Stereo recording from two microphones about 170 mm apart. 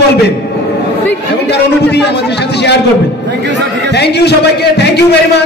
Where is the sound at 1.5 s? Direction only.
80° left.